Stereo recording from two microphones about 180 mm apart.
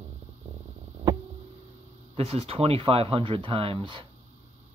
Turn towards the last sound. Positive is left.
turn(degrees=-25)  # may be behind; listen again after turning